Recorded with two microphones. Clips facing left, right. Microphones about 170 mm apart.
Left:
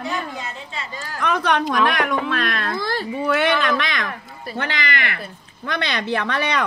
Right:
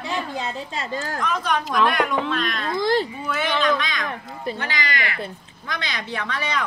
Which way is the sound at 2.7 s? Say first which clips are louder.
Right 4 dB; 20° right (ahead or behind).